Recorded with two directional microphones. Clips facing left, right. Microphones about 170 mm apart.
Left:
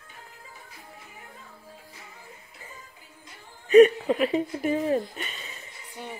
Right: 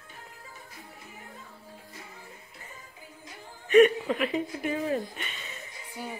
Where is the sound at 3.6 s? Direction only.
35° left (ahead or behind).